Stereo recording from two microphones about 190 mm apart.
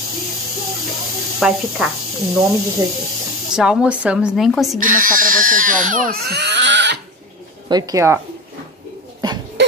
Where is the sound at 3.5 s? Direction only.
5° right (ahead or behind).